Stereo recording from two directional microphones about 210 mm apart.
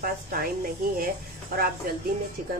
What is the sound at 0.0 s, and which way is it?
Speech, 45° right (ahead or behind).